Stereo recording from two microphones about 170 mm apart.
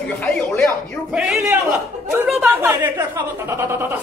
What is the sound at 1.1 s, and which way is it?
A man's voice, 5° right (ahead or behind).